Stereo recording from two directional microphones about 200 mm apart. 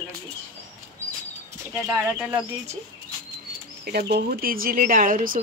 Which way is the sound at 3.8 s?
50° right (ahead or behind).